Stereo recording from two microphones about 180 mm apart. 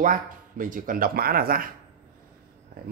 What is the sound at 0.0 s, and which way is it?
Speech, 50° right (ahead or behind).